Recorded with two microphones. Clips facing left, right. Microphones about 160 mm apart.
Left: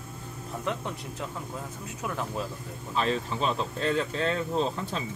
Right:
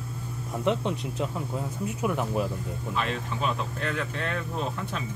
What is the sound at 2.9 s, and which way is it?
Speech, 35° left (ahead or behind).